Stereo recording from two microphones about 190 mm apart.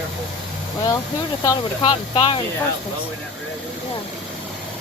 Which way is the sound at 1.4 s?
25° left (ahead or behind).